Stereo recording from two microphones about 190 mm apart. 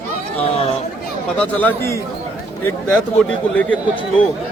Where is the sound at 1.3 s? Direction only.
10° left (ahead or behind).